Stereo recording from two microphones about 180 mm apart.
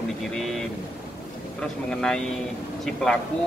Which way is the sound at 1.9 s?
5° left (ahead or behind).